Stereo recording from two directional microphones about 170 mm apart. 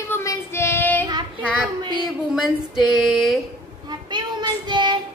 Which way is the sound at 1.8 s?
25° right (ahead or behind).